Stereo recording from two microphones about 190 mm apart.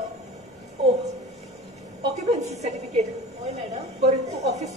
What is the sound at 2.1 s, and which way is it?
A woman's voice, 35° right (ahead or behind).